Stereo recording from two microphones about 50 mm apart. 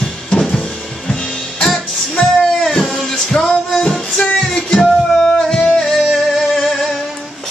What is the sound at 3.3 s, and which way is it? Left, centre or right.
Music, left.